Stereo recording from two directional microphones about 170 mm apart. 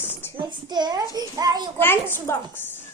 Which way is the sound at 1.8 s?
10° left (ahead or behind).